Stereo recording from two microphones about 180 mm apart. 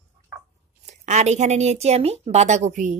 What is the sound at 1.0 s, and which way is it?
A woman's voice, 40° right (ahead or behind).